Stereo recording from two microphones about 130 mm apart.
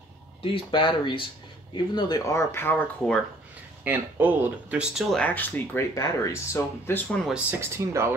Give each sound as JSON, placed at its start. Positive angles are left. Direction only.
{"t": 0.4, "sound": "speech", "side_deg": 40}
{"t": 3.8, "sound": "speech", "side_deg": -15}
{"t": 5.1, "sound": "speech", "side_deg": 10}
{"t": 7.1, "sound": "speech", "side_deg": 5}
{"t": 7.6, "sound": "speech", "side_deg": -20}